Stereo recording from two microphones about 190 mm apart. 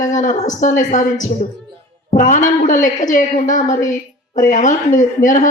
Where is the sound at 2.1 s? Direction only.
40° left (ahead or behind).